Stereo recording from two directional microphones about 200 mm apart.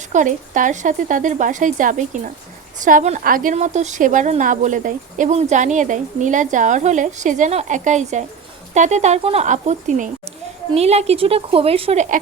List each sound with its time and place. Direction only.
0.1 s speech: 40° right (ahead or behind)